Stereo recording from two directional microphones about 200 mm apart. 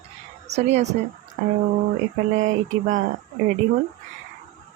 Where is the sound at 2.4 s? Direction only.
40° right (ahead or behind).